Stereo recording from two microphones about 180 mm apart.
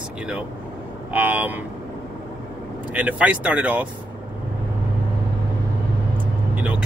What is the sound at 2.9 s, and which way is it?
Speech, 10° right (ahead or behind).